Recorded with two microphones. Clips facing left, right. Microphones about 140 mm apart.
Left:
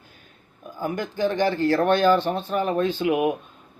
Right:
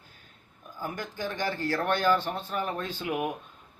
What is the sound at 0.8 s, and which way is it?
Speech, 75° left (ahead or behind).